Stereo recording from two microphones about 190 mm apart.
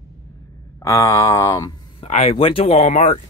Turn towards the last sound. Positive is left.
turn(degrees=40)  # may be behind; listen again after turning